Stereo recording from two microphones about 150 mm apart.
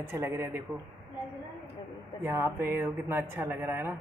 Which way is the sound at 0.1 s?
15° right (ahead or behind).